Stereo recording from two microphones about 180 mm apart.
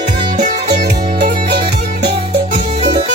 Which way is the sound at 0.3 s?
40° right (ahead or behind).